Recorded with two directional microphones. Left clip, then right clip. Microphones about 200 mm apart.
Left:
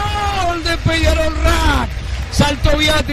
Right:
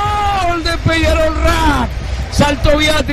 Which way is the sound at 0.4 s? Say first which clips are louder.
Right 2 dB; 5° right (ahead or behind).